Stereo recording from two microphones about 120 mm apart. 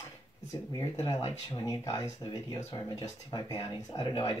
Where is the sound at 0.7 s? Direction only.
35° left (ahead or behind).